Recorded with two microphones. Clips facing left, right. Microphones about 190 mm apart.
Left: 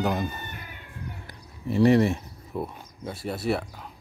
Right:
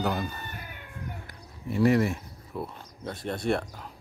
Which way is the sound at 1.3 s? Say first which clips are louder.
Left 8 dB; 25° left (ahead or behind).